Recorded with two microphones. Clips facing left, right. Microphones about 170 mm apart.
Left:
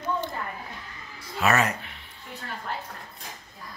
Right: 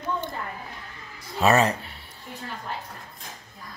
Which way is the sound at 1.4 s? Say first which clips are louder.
Right 4 dB; 30° right (ahead or behind).